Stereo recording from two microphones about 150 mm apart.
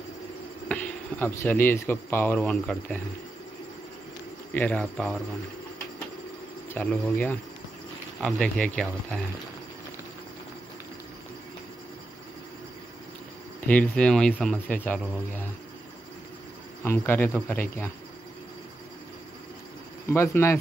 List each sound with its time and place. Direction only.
0.7 s speech: 10° left (ahead or behind)
4.5 s speech: 10° left (ahead or behind)
6.7 s speech: 10° left (ahead or behind)
13.7 s speech: 10° left (ahead or behind)
16.8 s speech: 15° left (ahead or behind)
20.1 s speech: 15° left (ahead or behind)